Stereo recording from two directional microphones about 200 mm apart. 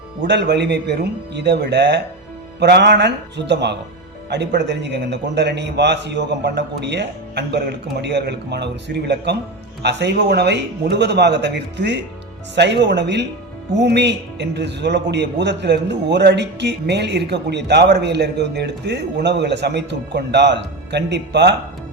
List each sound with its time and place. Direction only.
0.2 s a man's voice: 60° right (ahead or behind)